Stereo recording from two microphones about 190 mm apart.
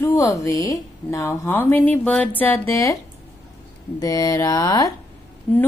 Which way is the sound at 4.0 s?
20° left (ahead or behind).